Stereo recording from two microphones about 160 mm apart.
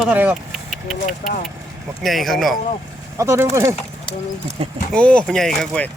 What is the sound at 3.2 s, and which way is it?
Speech, 15° right (ahead or behind).